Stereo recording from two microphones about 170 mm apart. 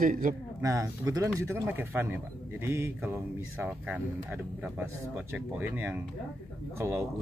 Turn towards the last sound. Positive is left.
turn(degrees=-15)  # may be behind; listen again after turning